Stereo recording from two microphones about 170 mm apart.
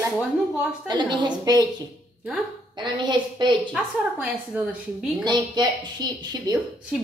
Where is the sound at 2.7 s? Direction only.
25° right (ahead or behind).